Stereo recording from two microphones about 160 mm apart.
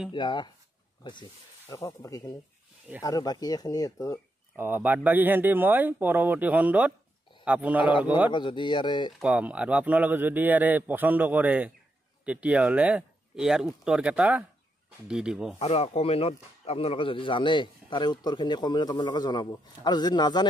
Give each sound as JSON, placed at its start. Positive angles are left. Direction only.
{"t": 0.1, "sound": "speech", "side_deg": 30}
{"t": 1.7, "sound": "speech", "side_deg": 20}
{"t": 4.6, "sound": "a man's voice", "side_deg": -10}
{"t": 8.3, "sound": "speech", "side_deg": 30}
{"t": 9.2, "sound": "a man's voice", "side_deg": -10}
{"t": 15.6, "sound": "speech", "side_deg": 40}